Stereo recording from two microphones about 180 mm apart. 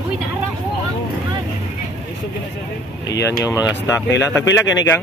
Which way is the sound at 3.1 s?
75° left (ahead or behind).